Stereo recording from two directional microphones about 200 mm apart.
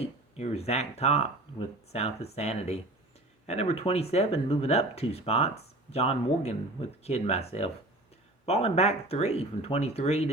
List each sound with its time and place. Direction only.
0.0 s speech: 30° left (ahead or behind)